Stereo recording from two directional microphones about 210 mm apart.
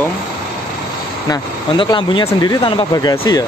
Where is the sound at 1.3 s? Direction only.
20° left (ahead or behind).